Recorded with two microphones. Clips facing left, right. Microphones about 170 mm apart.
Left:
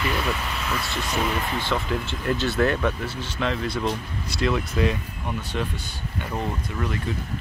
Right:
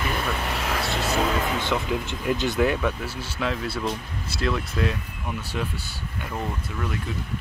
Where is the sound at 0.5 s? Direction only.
70° right (ahead or behind).